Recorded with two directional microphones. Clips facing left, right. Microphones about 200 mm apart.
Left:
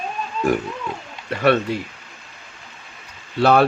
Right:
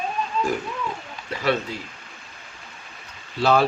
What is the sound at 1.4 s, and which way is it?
Speech, 65° left (ahead or behind).